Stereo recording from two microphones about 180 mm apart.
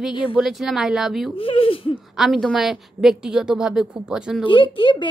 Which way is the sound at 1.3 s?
30° left (ahead or behind).